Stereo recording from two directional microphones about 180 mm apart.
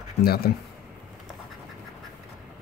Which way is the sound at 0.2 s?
60° left (ahead or behind).